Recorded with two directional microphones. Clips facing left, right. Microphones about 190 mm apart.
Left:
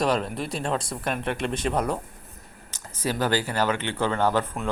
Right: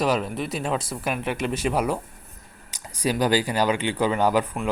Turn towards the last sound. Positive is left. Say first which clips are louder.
# right 2 dB
turn(degrees=-10)  # may be behind; listen again after turning